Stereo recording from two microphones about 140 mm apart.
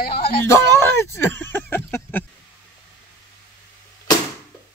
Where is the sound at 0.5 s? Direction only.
15° left (ahead or behind).